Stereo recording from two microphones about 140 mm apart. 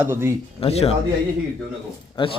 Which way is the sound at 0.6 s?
45° left (ahead or behind).